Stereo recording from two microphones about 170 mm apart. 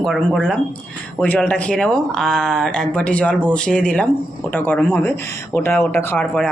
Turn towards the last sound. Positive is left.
turn(degrees=5)  # may be behind; listen again after turning